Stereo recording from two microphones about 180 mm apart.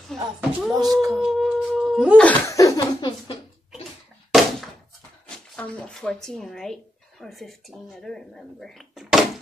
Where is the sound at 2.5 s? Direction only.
20° left (ahead or behind).